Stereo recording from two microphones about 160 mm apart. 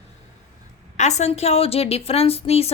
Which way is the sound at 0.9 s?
45° left (ahead or behind).